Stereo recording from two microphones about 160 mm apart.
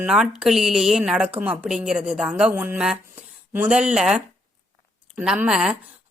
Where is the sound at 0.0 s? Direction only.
5° right (ahead or behind).